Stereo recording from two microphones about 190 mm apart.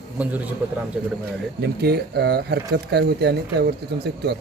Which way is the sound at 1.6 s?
60° right (ahead or behind).